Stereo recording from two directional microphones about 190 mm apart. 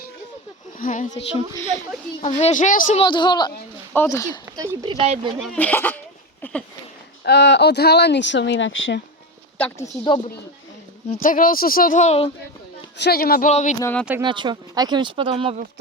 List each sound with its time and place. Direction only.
0.8 s a woman's voice: 40° left (ahead or behind)
3.0 s a woman's voice: 25° left (ahead or behind)
4.4 s speech: 15° right (ahead or behind); by 5.3 s 30° right (ahead or behind)
5.4 s speech: 5° left (ahead or behind)
6.4 s a sound: 5° left (ahead or behind)
7.3 s speech: 65° left (ahead or behind); by 9.0 s 85° left
9.6 s speech: 10° left (ahead or behind)
11.1 s speech: 45° left (ahead or behind)
13.0 s speech: 55° left (ahead or behind)
13.5 s a woman's voice: 35° left (ahead or behind)
13.7 s speech: 15° left (ahead or behind)
14.2 s speech: 25° right (ahead or behind)